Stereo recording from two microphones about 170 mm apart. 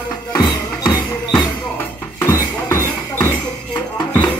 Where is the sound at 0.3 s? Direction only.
25° left (ahead or behind).